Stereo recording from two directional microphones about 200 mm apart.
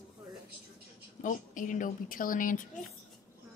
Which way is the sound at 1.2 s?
40° left (ahead or behind).